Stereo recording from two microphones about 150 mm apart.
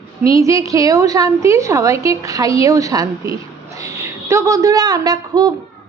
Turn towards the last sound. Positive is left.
turn(degrees=-25)  # may be behind; listen again after turning